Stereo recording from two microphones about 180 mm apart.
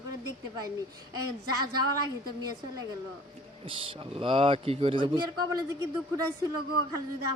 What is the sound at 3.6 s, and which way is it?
A man's voice, 30° right (ahead or behind).